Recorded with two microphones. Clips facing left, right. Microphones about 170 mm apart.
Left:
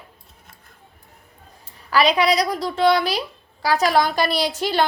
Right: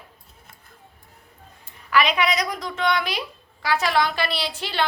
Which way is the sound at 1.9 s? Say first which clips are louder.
Left 4 dB; 35° left (ahead or behind).